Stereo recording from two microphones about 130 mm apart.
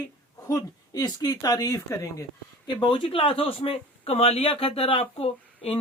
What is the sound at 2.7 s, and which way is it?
Speech, 35° left (ahead or behind).